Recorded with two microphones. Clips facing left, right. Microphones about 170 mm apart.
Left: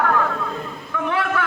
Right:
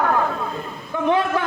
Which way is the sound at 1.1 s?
30° right (ahead or behind).